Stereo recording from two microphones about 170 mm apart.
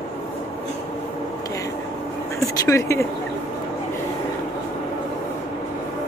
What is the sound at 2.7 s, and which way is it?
Speech, 15° left (ahead or behind).